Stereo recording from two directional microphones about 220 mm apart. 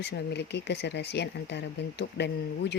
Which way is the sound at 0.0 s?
50° left (ahead or behind).